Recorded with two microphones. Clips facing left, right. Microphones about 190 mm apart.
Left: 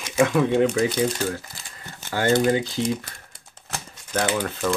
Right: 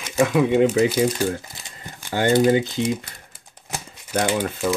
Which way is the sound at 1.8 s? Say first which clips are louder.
Right 1 dB; 15° right (ahead or behind).